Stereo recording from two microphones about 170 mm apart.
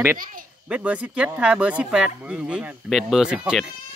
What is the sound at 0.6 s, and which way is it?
Speech, 10° right (ahead or behind).